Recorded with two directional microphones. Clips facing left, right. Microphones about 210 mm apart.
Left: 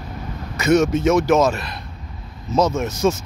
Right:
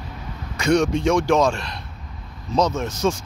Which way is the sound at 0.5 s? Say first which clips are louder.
Left 2 dB; 5° left (ahead or behind).